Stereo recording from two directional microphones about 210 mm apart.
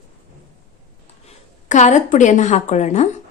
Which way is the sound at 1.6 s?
35° left (ahead or behind).